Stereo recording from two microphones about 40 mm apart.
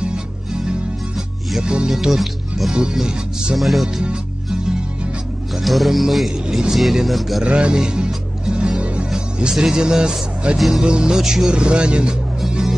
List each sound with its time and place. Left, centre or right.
0.0 s music: right
1.6 s speech: right
1.9 s speech: centre
2.7 s speech: centre
3.5 s speech: centre
3.8 s music: centre
5.6 s speech: centre
7.4 s speech: right
8.5 s music: centre
9.4 s speech: centre
11.5 s speech: right